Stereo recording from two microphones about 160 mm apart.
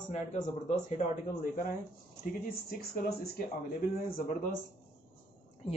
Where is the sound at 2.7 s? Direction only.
70° left (ahead or behind).